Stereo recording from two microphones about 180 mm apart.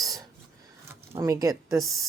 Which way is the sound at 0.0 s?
20° right (ahead or behind).